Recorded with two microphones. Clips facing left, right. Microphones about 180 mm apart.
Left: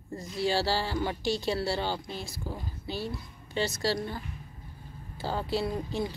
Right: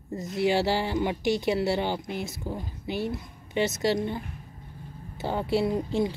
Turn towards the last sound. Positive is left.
turn(degrees=-20)  # may be behind; listen again after turning